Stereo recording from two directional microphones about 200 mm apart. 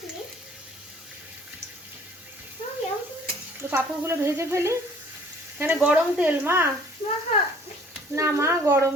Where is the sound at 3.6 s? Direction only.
10° right (ahead or behind).